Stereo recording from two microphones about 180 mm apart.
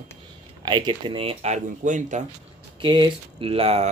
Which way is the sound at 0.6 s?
25° right (ahead or behind).